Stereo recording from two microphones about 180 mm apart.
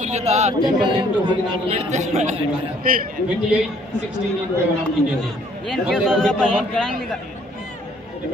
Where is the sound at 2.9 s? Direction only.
55° right (ahead or behind).